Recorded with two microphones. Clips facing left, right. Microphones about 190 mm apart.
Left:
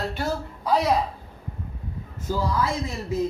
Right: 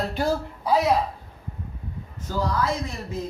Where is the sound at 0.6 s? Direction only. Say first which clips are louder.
Right 1 dB; 5° right (ahead or behind).